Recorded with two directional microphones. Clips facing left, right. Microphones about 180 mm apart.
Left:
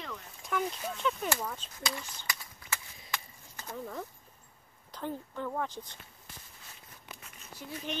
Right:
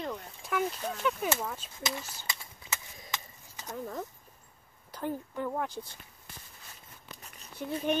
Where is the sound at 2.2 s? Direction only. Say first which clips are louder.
Even; 25° right (ahead or behind).